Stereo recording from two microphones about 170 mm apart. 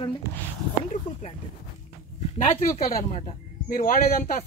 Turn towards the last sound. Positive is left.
turn(degrees=55)  # may be behind; listen again after turning